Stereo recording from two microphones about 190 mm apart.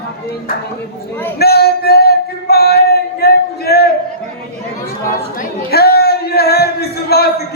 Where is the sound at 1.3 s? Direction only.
55° left (ahead or behind).